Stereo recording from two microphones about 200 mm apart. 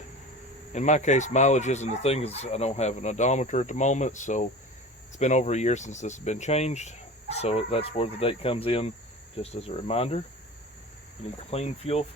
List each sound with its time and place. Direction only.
0.7 s speech: 35° left (ahead or behind)
11.5 s speech: 30° left (ahead or behind)